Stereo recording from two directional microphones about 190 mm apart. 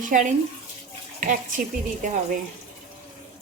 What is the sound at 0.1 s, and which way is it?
A woman's voice, 40° right (ahead or behind).